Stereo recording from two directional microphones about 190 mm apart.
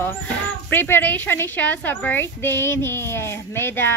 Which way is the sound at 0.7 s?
10° left (ahead or behind).